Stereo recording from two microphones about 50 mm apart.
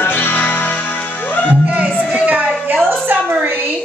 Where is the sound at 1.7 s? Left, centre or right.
Right.